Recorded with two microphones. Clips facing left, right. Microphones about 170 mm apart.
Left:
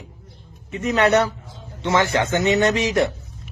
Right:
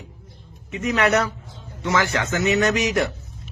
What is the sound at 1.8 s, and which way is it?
A man's voice, 25° left (ahead or behind).